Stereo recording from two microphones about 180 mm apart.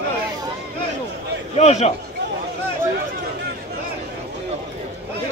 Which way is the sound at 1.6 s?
35° left (ahead or behind).